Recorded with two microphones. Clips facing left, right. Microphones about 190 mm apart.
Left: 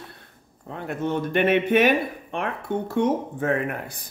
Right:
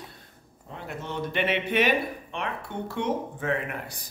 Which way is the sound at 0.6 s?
55° left (ahead or behind).